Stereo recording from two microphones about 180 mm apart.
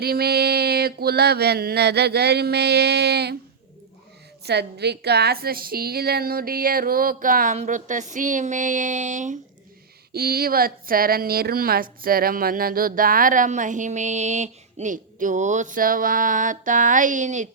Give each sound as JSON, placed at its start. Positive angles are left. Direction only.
{"t": 0.0, "sound": "a sound", "side_deg": -60}
{"t": 4.4, "sound": "a woman's voice", "side_deg": -65}
{"t": 10.1, "sound": "a woman's voice", "side_deg": -60}